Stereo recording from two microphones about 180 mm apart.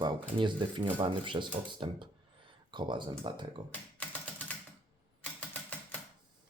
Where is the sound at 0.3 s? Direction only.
25° right (ahead or behind).